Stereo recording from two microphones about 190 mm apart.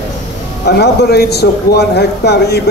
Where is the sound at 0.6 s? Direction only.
60° left (ahead or behind).